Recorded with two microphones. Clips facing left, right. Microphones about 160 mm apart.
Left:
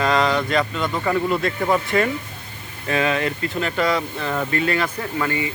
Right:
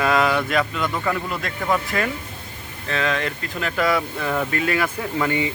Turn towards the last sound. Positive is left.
turn(degrees=-20)  # may be behind; listen again after turning